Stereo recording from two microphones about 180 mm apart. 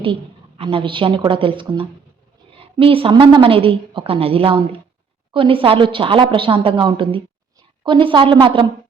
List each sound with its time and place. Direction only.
0.0 s a woman's voice: 30° right (ahead or behind)